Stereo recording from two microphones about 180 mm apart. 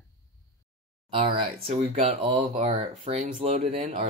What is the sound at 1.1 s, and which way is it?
Speech, 30° right (ahead or behind).